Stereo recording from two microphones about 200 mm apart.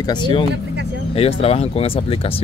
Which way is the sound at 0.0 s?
20° left (ahead or behind).